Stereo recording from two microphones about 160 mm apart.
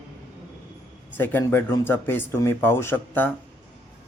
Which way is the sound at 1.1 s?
10° left (ahead or behind).